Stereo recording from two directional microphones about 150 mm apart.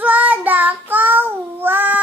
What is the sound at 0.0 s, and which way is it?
Child singing, 10° right (ahead or behind).